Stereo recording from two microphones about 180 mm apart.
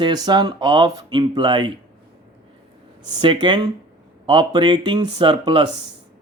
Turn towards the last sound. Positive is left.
turn(degrees=-25)  # may be behind; listen again after turning